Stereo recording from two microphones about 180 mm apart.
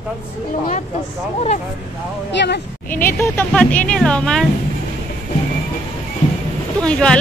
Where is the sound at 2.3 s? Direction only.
70° left (ahead or behind).